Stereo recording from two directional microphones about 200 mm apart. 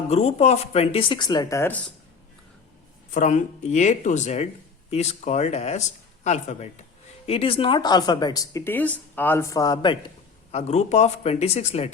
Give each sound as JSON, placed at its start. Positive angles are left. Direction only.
{"t": 0.1, "sound": "speech", "side_deg": 30}
{"t": 3.2, "sound": "speech", "side_deg": 40}
{"t": 10.5, "sound": "speech", "side_deg": 35}